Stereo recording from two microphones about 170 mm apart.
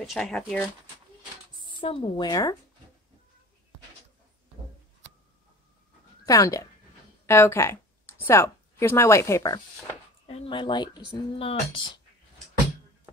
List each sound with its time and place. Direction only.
0.0 s speech: centre (ahead or behind)
1.6 s a woman's voice: 30° left (ahead or behind)
6.2 s speech: 20° left (ahead or behind)
10.2 s speech: 30° left (ahead or behind)